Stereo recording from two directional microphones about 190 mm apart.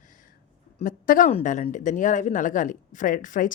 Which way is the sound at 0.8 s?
45° left (ahead or behind).